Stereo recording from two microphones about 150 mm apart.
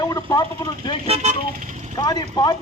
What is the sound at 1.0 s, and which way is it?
Speech, 45° right (ahead or behind).